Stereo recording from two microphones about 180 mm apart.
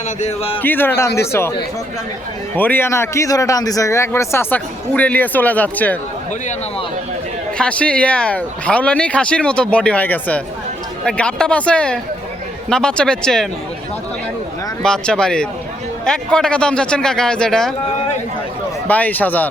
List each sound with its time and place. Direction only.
0.2 s speech: 35° left (ahead or behind)
0.6 s speech: 10° left (ahead or behind)
2.6 s speech: 10° left (ahead or behind)
7.6 s a man's voice: 5° left (ahead or behind)
14.8 s a man's voice: 5° left (ahead or behind)
18.9 s speech: 10° left (ahead or behind)